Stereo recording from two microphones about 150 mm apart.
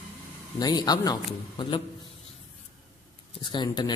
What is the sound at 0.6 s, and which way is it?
Speech, 30° left (ahead or behind).